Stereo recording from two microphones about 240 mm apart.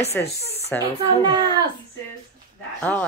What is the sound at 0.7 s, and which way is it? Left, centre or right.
Speech, centre.